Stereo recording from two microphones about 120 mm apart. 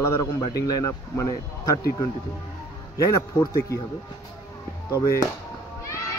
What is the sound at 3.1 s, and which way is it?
Speech, 25° left (ahead or behind).